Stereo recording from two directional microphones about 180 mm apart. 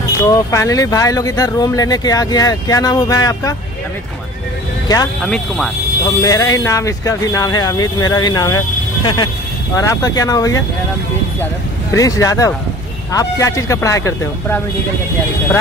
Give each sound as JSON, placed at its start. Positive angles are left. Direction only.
{"t": 0.2, "sound": "speech", "side_deg": 15}
{"t": 4.8, "sound": "speech", "side_deg": 20}
{"t": 5.2, "sound": "speech", "side_deg": 0}
{"t": 6.0, "sound": "speech", "side_deg": 20}
{"t": 11.9, "sound": "speech", "side_deg": 20}